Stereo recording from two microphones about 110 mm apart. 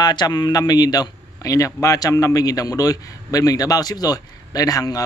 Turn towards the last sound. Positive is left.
turn(degrees=30)  # may be behind; listen again after turning